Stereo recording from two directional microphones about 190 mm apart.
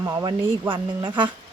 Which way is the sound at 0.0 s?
20° right (ahead or behind).